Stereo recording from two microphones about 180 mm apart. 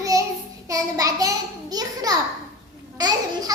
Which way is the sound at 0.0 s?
20° right (ahead or behind).